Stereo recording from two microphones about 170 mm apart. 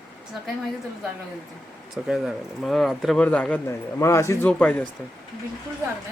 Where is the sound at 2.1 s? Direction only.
Centre (ahead or behind).